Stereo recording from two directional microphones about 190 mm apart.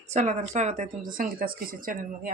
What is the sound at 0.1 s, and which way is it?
A woman's voice, 40° right (ahead or behind).